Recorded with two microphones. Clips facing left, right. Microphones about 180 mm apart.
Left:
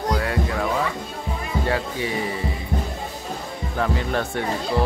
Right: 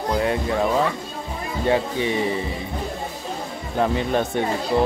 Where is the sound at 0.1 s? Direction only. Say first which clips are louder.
Right 4 dB; 20° right (ahead or behind).